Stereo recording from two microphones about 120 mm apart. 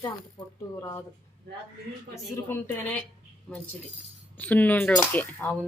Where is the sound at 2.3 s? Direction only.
20° left (ahead or behind).